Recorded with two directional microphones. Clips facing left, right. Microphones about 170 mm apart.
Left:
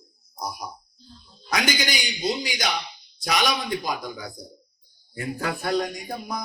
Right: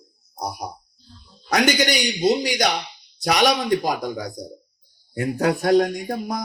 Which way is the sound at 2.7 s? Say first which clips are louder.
Right 3 dB; 40° right (ahead or behind).